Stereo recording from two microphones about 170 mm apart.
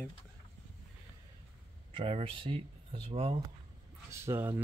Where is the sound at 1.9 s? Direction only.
35° right (ahead or behind).